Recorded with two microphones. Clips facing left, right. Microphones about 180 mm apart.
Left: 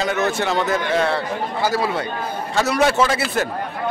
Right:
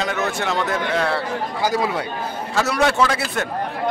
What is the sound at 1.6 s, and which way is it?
Speech, 15° right (ahead or behind).